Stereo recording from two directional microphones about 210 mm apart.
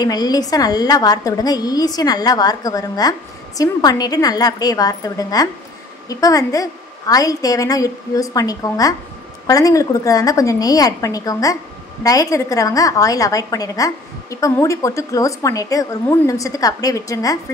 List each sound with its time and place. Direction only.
0.0 s a woman's voice: 20° left (ahead or behind)